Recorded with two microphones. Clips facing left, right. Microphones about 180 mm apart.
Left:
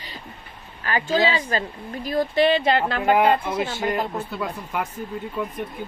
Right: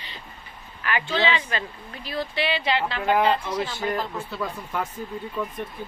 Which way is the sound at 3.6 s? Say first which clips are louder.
Left 3 dB; 25° left (ahead or behind).